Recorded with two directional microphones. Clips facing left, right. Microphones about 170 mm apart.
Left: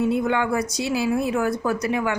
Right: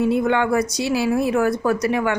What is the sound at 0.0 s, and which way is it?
Speech, 70° right (ahead or behind).